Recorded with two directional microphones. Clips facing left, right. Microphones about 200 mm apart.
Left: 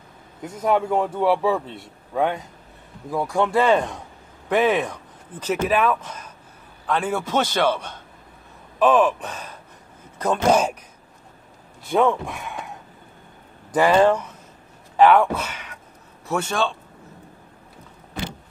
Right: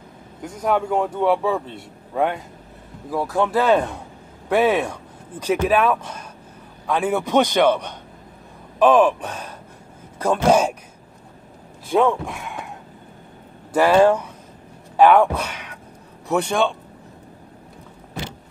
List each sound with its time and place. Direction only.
0.4 s a man's voice: centre (ahead or behind)
3.1 s a man's voice: centre (ahead or behind)
11.9 s a man's voice: centre (ahead or behind)
13.7 s speech: 5° right (ahead or behind)